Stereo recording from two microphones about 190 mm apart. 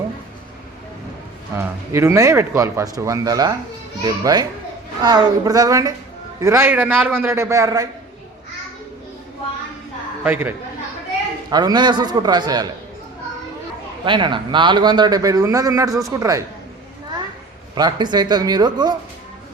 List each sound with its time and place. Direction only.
1.5 s a man's voice: 15° right (ahead or behind)
10.2 s speech: 10° right (ahead or behind)
11.5 s a man's voice: 20° right (ahead or behind)
14.0 s a man's voice: 25° right (ahead or behind)
17.7 s a man's voice: 20° right (ahead or behind)